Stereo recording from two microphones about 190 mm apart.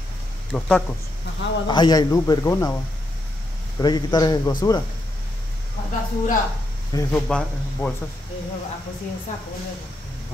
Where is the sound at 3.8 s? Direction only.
20° left (ahead or behind).